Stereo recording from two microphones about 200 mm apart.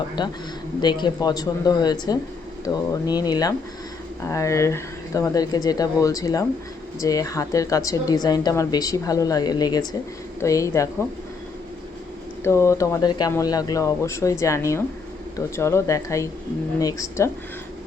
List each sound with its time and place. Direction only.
0.2 s speech: 20° left (ahead or behind)
12.4 s speech: 10° left (ahead or behind)